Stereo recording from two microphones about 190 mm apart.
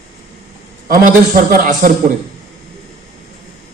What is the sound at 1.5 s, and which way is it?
Speech, 45° right (ahead or behind).